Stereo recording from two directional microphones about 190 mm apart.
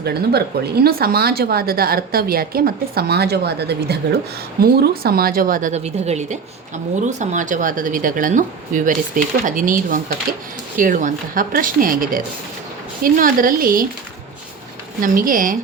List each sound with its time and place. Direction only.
0.0 s speech: 55° right (ahead or behind)
15.0 s speech: 45° right (ahead or behind)